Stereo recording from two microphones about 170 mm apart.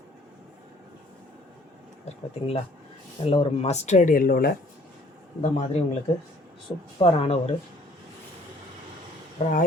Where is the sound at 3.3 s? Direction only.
35° left (ahead or behind); by 4.5 s 60° left (ahead or behind).